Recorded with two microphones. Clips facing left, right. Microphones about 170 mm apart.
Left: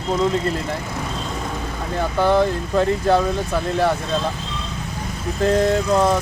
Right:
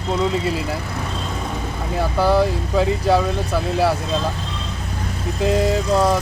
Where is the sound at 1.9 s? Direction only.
5° right (ahead or behind).